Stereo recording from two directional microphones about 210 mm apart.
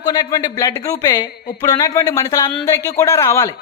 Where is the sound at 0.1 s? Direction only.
20° left (ahead or behind).